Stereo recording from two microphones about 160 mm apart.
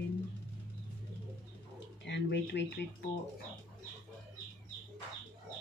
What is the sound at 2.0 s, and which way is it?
Speech, 90° left.